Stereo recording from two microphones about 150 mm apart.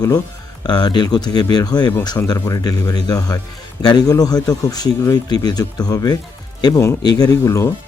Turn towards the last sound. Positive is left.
turn(degrees=20)  # may be behind; listen again after turning